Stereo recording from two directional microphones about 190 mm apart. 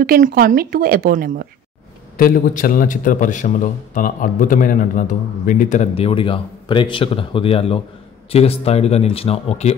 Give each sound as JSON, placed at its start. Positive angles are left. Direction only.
{"t": 0.0, "sound": "speech", "side_deg": -50}
{"t": 2.1, "sound": "a man's voice", "side_deg": 45}